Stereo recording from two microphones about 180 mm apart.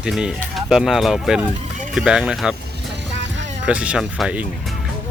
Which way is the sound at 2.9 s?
80° right.